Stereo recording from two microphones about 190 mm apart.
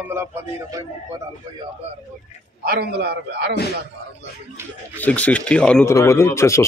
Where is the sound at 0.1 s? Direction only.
15° right (ahead or behind).